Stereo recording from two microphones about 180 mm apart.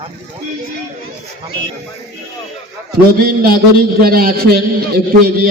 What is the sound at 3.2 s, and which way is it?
A man's voice, 55° right (ahead or behind).